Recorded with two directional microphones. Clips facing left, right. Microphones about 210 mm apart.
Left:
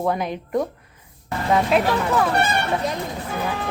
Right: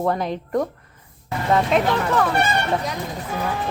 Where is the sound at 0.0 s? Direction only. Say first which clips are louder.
Right 1 dB; 5° left (ahead or behind).